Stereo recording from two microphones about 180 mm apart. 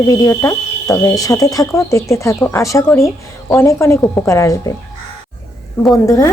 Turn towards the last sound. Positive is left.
turn(degrees=15)  # may be behind; listen again after turning